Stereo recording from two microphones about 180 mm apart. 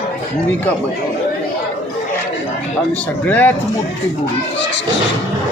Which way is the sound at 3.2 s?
10° left (ahead or behind).